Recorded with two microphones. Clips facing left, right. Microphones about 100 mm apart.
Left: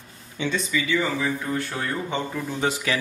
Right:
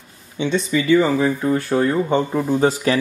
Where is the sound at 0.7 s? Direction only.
40° right (ahead or behind).